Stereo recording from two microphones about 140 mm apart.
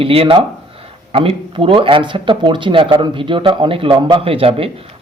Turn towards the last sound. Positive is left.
turn(degrees=-40)  # may be behind; listen again after turning